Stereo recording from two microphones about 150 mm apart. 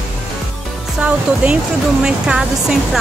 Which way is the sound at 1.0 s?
10° right (ahead or behind).